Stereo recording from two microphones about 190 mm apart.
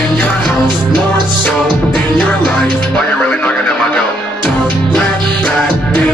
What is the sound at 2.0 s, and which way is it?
Music, 5° left (ahead or behind).